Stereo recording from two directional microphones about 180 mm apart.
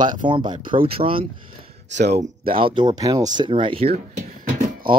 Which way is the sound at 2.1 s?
45° right (ahead or behind).